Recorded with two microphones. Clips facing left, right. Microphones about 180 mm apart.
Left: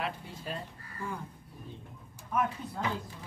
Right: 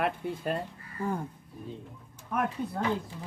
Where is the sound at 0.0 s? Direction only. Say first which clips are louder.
Right 7 dB; 55° right (ahead or behind).